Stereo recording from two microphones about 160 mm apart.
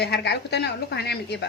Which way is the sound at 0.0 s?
90° left.